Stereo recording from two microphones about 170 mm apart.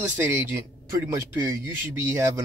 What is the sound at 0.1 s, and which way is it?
Speech, 15° right (ahead or behind).